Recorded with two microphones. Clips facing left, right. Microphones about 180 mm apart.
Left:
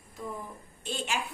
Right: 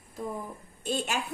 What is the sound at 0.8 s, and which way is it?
Speech, 45° right (ahead or behind).